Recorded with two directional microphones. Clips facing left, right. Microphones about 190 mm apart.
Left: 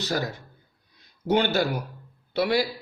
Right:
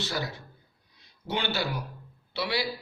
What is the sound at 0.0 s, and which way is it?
A man's voice, 45° left (ahead or behind).